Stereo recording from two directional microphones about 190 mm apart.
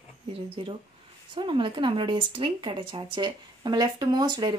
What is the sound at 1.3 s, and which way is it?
Speech, 25° right (ahead or behind).